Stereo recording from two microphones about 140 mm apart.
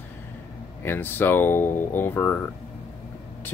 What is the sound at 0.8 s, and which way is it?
Speech, 15° left (ahead or behind).